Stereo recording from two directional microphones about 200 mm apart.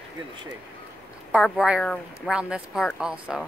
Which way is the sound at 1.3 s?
5° right (ahead or behind).